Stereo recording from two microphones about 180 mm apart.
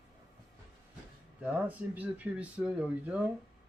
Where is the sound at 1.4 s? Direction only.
10° right (ahead or behind).